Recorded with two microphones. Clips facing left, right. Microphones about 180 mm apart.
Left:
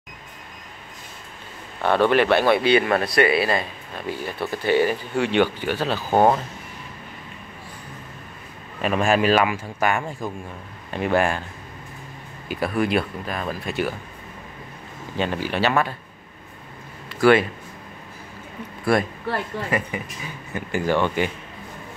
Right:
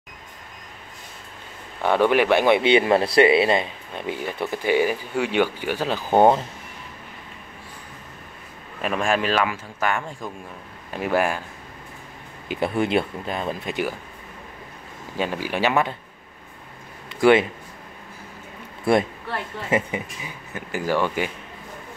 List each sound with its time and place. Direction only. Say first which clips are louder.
1.8 s speech: even; 10° right (ahead or behind)
8.8 s speech: left 3 dB; 5° left (ahead or behind)
10.9 s speech: left 1 dB; 5° right (ahead or behind)
12.4 s speech: even; 25° right (ahead or behind)
15.1 s speech: left 1 dB; 10° right (ahead or behind)
17.1 s speech: even; 20° right (ahead or behind)
19.7 s speech: right 5 dB; 20° right (ahead or behind)
20.5 s speech: left 2 dB; 5° right (ahead or behind)